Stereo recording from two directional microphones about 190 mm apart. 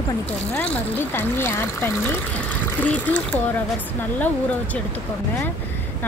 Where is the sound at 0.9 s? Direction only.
10° left (ahead or behind).